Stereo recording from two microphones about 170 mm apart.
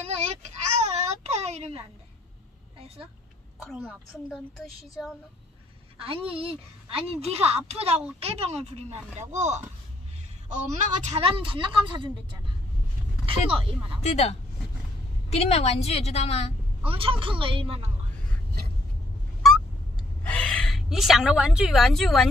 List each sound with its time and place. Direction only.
0.7 s a sound: 40° right (ahead or behind)
3.5 s a woman's voice: centre (ahead or behind)
5.9 s a woman's voice: 35° right (ahead or behind)
13.5 s a woman's voice: 30° right (ahead or behind)
14.0 s a woman's voice: 40° left (ahead or behind)
16.8 s a woman's voice: 30° right (ahead or behind)
20.2 s a woman's voice: 5° left (ahead or behind)